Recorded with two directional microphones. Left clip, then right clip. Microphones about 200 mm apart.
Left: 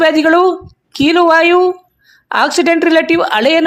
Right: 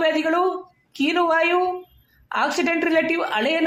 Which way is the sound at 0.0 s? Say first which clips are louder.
Left 10 dB; 45° left (ahead or behind).